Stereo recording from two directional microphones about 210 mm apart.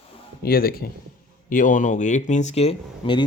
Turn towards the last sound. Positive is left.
turn(degrees=25)  # may be behind; listen again after turning